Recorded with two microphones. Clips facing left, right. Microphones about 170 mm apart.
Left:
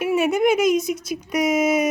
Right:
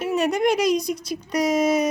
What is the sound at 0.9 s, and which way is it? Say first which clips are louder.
Speech: left 1 dB; 50° left (ahead or behind).